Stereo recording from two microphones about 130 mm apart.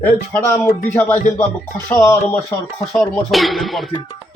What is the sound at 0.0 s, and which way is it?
Speech, 15° left (ahead or behind).